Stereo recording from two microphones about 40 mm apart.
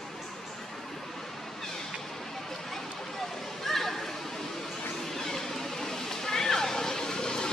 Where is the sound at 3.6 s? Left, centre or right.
Centre.